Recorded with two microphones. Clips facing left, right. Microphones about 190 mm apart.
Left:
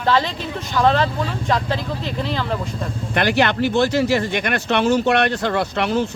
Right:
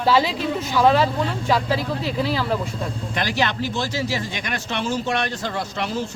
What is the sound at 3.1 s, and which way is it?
Speech, 60° left (ahead or behind).